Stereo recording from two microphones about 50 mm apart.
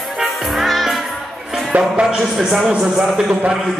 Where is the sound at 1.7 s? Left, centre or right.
Right.